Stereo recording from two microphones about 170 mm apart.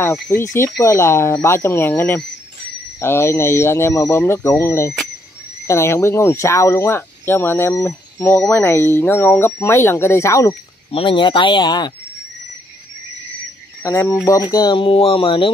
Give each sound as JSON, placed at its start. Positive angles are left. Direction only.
{"t": 0.0, "sound": "speech", "side_deg": 15}
{"t": 10.9, "sound": "speech", "side_deg": 30}
{"t": 13.8, "sound": "speech", "side_deg": 20}